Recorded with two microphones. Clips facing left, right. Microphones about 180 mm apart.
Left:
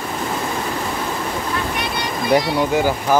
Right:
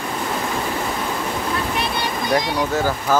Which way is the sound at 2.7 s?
15° left (ahead or behind).